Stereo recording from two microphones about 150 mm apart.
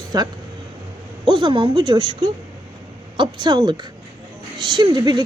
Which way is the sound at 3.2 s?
30° right (ahead or behind).